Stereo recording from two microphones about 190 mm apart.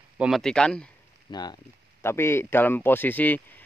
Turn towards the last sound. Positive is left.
turn(degrees=10)  # may be behind; listen again after turning